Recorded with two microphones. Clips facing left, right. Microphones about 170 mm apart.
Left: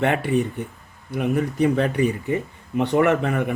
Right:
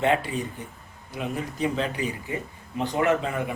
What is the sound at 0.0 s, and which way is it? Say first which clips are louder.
Speech: left 4 dB; 65° left (ahead or behind).